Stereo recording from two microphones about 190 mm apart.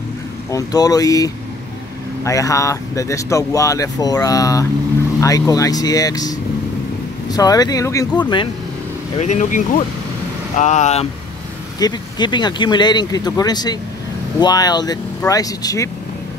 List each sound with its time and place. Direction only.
0.5 s speech: 20° left (ahead or behind)
9.2 s speech: 40° left (ahead or behind)
11.8 s speech: 20° left (ahead or behind)